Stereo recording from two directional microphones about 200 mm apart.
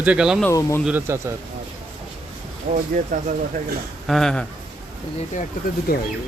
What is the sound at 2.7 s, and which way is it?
Speech, 25° right (ahead or behind).